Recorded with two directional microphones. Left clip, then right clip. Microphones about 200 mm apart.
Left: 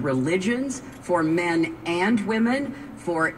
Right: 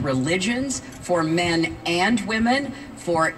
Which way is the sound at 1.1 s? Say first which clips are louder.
Right 1 dB; 45° right (ahead or behind).